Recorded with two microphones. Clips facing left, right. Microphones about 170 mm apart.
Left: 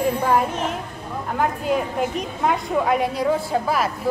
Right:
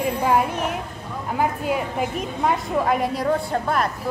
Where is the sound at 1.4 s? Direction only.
5° right (ahead or behind).